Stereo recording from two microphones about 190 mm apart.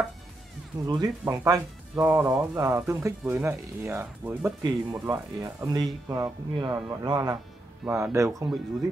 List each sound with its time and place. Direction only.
0.8 s speech: 20° right (ahead or behind)